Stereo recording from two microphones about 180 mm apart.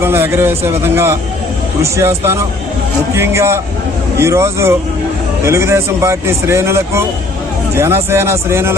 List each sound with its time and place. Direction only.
0.0 s speech: 15° right (ahead or behind)